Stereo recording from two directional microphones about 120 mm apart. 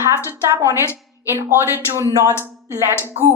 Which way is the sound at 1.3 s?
20° right (ahead or behind).